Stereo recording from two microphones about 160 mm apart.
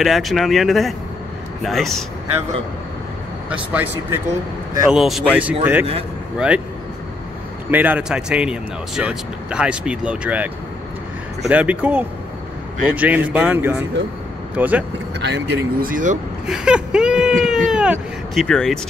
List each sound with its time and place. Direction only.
0.0 s speech: centre (ahead or behind)
3.4 s speech: 10° right (ahead or behind)
7.7 s speech: 10° right (ahead or behind)
15.1 s speech: 90° right; by 16.2 s 55° right (ahead or behind)
16.4 s speech: 5° right (ahead or behind)